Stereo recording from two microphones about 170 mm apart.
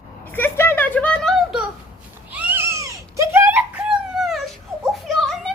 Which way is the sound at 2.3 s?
10° right (ahead or behind).